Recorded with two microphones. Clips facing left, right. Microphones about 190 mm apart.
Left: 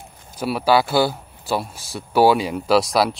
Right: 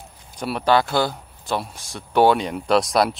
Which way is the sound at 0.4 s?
5° left (ahead or behind).